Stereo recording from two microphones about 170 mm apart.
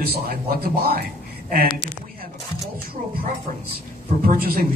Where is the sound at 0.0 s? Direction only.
65° right (ahead or behind).